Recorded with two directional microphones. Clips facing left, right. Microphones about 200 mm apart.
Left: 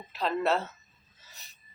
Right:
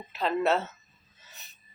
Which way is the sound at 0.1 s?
Centre (ahead or behind).